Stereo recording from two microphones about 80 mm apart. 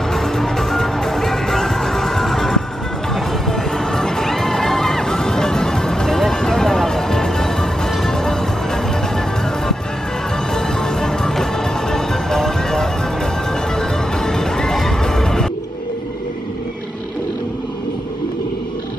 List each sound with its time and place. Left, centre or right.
0.1 s music: centre
3.2 s crowd: centre
10.5 s music: centre